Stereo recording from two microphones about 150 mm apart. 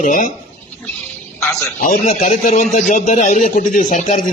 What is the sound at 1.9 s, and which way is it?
Speech, 55° left (ahead or behind).